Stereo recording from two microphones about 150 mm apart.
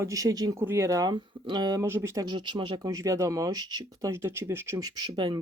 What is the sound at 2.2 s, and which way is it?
Speech, 30° right (ahead or behind).